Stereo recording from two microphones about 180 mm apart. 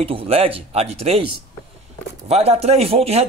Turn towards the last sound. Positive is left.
turn(degrees=-35)  # may be behind; listen again after turning